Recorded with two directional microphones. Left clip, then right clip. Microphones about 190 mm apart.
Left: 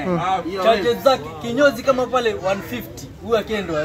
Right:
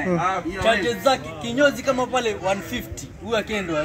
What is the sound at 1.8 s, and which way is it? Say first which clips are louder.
Speech: left 4 dB; 10° right (ahead or behind).